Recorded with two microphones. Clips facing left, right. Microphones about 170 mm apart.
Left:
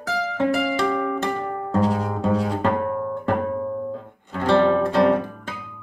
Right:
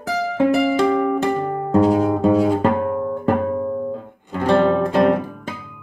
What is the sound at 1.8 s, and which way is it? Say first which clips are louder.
Double bass: right 7 dB; 15° right (ahead or behind).